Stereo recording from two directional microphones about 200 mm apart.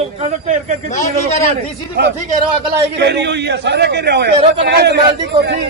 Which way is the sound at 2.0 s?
50° right (ahead or behind).